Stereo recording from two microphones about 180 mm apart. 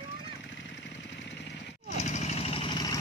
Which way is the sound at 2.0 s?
40° left (ahead or behind).